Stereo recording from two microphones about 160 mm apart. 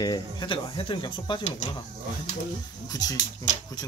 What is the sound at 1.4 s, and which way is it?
Speech, 45° left (ahead or behind).